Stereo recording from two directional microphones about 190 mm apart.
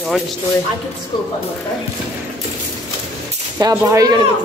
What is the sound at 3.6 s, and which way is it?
Speech, 20° right (ahead or behind).